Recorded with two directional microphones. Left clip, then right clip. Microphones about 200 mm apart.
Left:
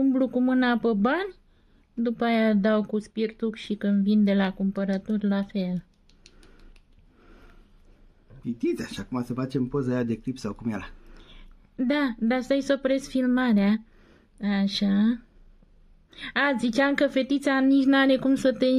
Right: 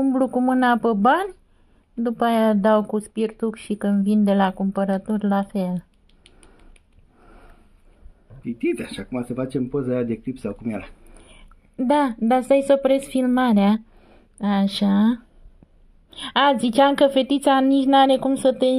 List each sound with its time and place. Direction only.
0.0 s speech: 10° left (ahead or behind)
7.2 s sniff: 10° left (ahead or behind)
8.4 s speech: 25° left (ahead or behind)
11.1 s a woman's voice: 5° left (ahead or behind)